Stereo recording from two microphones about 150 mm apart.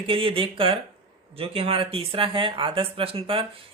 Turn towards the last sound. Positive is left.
turn(degrees=-35)  # may be behind; listen again after turning